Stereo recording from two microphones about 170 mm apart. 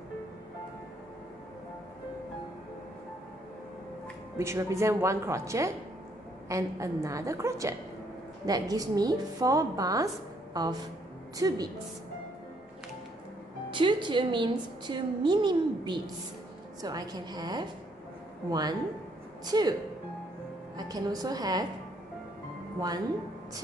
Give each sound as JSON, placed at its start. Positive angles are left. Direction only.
{"t": 4.4, "sound": "a woman's voice", "side_deg": -15}
{"t": 13.7, "sound": "a woman's voice", "side_deg": -30}
{"t": 20.7, "sound": "a woman's voice", "side_deg": -20}